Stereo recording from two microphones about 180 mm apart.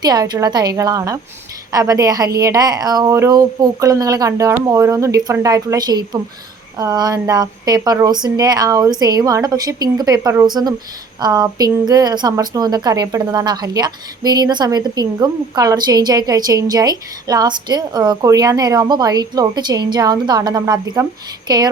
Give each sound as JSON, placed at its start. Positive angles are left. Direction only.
{"t": 0.0, "sound": "a woman's voice", "side_deg": -20}